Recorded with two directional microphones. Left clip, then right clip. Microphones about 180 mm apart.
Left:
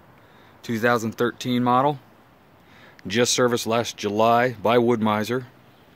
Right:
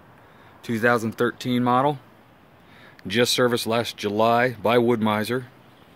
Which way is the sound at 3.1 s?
15° left (ahead or behind).